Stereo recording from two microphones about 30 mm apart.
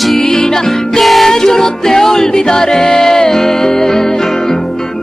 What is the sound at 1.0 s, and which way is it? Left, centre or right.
Music, centre.